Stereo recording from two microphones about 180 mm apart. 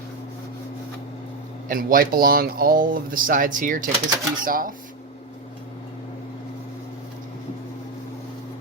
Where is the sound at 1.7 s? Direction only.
50° right (ahead or behind).